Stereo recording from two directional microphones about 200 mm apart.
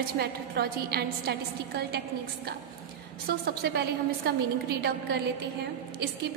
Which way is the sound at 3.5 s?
55° right (ahead or behind).